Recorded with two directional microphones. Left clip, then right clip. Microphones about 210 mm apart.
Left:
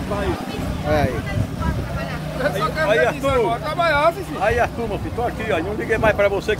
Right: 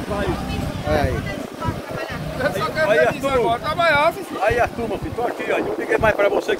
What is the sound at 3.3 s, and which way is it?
Speech, 35° right (ahead or behind).